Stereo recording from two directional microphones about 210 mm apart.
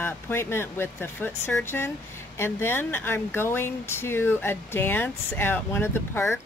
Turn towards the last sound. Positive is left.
turn(degrees=10)  # may be behind; listen again after turning